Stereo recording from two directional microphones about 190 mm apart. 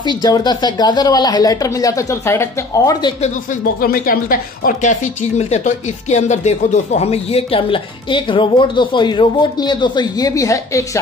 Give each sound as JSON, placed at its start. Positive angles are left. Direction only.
{"t": 0.0, "sound": "speech", "side_deg": 20}
{"t": 3.8, "sound": "speech", "side_deg": 45}
{"t": 5.4, "sound": "speech", "side_deg": 35}